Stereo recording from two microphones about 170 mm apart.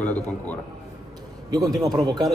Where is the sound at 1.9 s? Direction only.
25° right (ahead or behind).